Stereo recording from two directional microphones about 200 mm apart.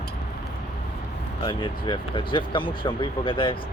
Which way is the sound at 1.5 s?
25° left (ahead or behind).